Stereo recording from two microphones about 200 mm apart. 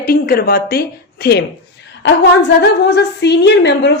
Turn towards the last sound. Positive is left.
turn(degrees=60)  # may be behind; listen again after turning